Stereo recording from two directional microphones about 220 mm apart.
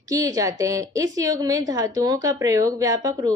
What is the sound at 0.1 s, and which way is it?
A woman's voice, 15° right (ahead or behind).